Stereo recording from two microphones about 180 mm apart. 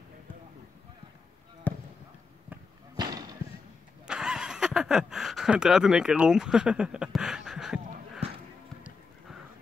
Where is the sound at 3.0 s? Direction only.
20° right (ahead or behind).